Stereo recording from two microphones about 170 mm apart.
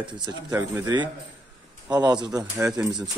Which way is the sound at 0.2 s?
20° right (ahead or behind).